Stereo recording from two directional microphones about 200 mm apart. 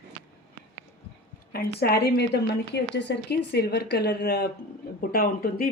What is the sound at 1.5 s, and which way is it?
A woman's voice, 50° left (ahead or behind).